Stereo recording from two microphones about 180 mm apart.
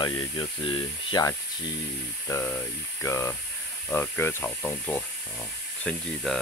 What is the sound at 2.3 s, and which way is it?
Speech, 10° left (ahead or behind).